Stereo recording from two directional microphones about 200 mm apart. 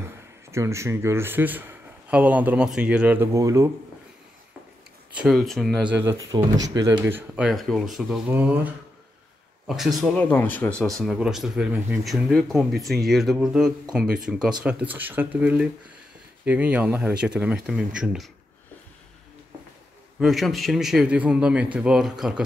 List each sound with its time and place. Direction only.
0.5 s speech: 15° right (ahead or behind)
5.1 s speech: centre (ahead or behind)
9.7 s speech: centre (ahead or behind)
11.0 s speech: centre (ahead or behind)
20.2 s speech: centre (ahead or behind)